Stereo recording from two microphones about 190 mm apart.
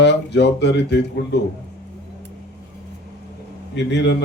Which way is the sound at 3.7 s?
65° left (ahead or behind).